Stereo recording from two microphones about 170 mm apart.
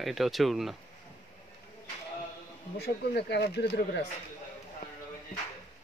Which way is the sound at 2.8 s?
75° left (ahead or behind).